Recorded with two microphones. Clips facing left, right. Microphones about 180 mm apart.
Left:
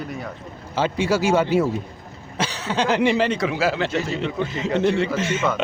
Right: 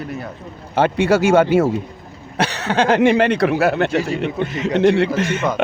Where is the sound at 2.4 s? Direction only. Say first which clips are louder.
Right 5 dB; 65° right (ahead or behind).